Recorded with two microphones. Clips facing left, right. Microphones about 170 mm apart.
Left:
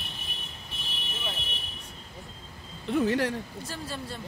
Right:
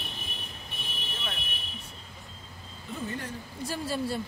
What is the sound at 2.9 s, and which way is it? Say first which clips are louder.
Speech: left 11 dB; 90° left.